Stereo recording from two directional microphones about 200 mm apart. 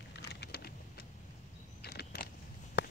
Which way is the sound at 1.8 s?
50° left (ahead or behind).